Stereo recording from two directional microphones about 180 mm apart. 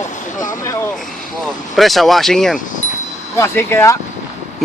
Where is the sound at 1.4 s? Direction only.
Centre (ahead or behind).